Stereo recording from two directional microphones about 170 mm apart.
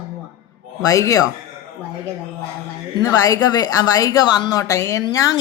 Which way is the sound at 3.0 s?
20° left (ahead or behind).